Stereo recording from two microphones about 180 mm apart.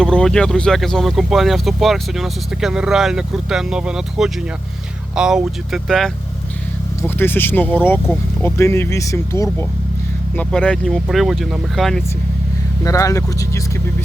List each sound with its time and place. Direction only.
0.0 s speech: 5° left (ahead or behind)
7.2 s speech: 10° left (ahead or behind)
12.8 s speech: 20° left (ahead or behind)